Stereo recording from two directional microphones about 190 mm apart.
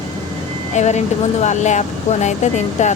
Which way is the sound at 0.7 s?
35° left (ahead or behind).